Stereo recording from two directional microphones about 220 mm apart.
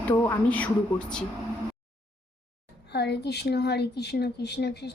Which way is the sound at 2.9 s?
50° left (ahead or behind).